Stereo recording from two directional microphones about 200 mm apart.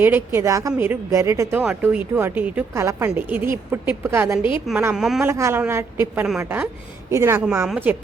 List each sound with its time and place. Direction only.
0.0 s a woman's voice: 10° right (ahead or behind)
4.9 s a man's voice: centre (ahead or behind)
5.3 s a woman's voice: 15° right (ahead or behind)